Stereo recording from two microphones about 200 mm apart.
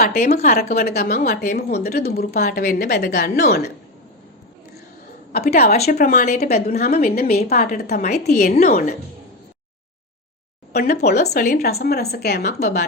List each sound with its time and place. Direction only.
0.0 s speech: 50° left (ahead or behind)
5.3 s speech: 50° left (ahead or behind)
5.6 s speech: 30° left (ahead or behind)
5.9 s speech: 50° left (ahead or behind)
8.3 s speech: 40° left (ahead or behind)
10.7 s speech: 55° left (ahead or behind)